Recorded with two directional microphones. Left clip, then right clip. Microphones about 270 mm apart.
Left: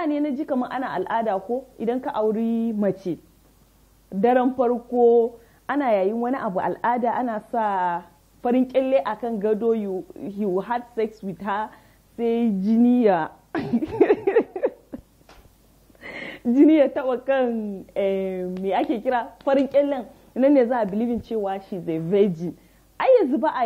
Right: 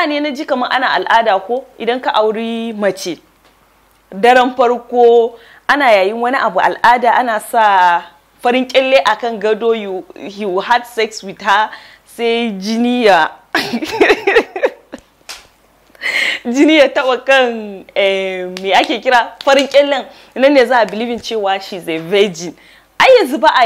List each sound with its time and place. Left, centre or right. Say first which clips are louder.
0.0 s a woman's voice: right 9 dB; centre
4.8 s a sound: right 8 dB; right
5.7 s a woman's voice: right 11 dB; centre